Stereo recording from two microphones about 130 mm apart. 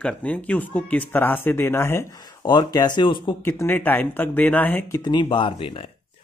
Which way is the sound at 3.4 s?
15° left (ahead or behind).